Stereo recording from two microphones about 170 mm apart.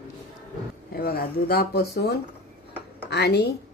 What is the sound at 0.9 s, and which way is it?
A woman's voice, 60° left (ahead or behind).